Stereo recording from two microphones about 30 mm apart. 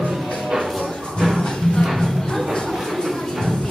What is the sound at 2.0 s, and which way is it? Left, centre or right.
Music, centre.